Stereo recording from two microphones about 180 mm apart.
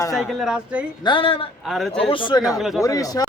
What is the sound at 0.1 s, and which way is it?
Speech, centre (ahead or behind).